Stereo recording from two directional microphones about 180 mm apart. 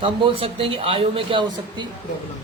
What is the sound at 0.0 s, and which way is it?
A woman's voice, 30° right (ahead or behind).